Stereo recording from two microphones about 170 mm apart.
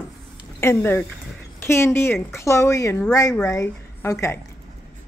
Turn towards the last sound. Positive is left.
turn(degrees=15)  # may be behind; listen again after turning